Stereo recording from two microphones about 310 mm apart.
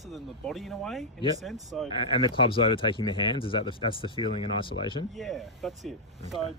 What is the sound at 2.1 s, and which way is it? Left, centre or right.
Speech, centre.